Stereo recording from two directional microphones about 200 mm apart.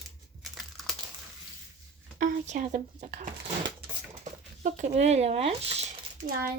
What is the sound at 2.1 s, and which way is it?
Speech, 40° right (ahead or behind).